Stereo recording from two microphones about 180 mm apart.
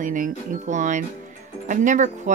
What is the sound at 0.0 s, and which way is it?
Speech, 45° right (ahead or behind).